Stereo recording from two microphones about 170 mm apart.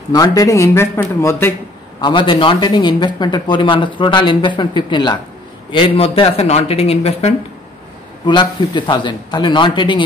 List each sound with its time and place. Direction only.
0.1 s speech: 20° left (ahead or behind)
2.0 s speech: 25° left (ahead or behind)
8.3 s speech: 25° left (ahead or behind)